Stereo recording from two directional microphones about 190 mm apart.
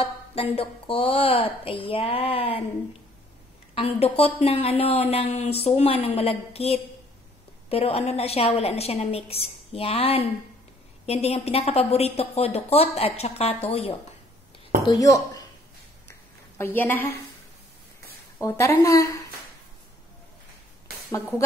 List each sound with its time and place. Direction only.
0.0 s a woman's voice: 30° left (ahead or behind)
3.7 s a woman's voice: 30° left (ahead or behind)
14.9 s a woman's voice: 20° left (ahead or behind)
16.1 s a sound: 10° left (ahead or behind)
18.4 s a woman's voice: 15° left (ahead or behind)